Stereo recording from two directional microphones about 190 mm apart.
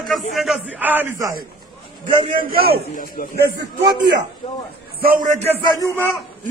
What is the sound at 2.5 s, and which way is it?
Speech, 50° right (ahead or behind).